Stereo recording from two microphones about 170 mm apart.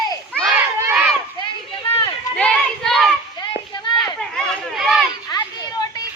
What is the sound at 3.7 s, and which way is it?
Children playing, 25° left (ahead or behind).